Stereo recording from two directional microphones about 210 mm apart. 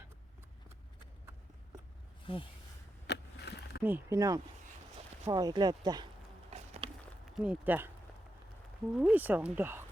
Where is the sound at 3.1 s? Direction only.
50° left (ahead or behind).